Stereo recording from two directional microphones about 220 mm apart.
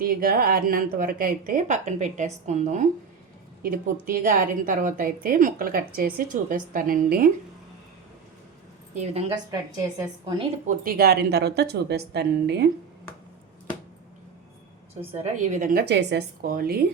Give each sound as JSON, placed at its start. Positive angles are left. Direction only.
{"t": 0.2, "sound": "a woman's voice", "side_deg": -40}
{"t": 9.0, "sound": "a woman's voice", "side_deg": -30}
{"t": 9.5, "sound": "a woman's voice", "side_deg": -15}
{"t": 10.7, "sound": "a woman's voice", "side_deg": -40}
{"t": 15.1, "sound": "a woman's voice", "side_deg": -30}